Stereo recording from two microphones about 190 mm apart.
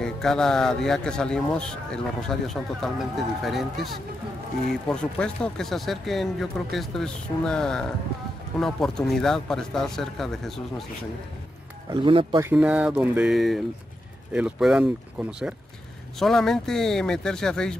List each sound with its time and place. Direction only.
0.0 s speech: 5° left (ahead or behind)
11.9 s speech: 25° right (ahead or behind)
12.4 s speech: 10° right (ahead or behind)